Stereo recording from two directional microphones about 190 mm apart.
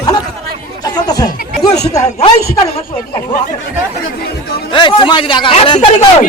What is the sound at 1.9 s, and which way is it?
Speech, 20° left (ahead or behind).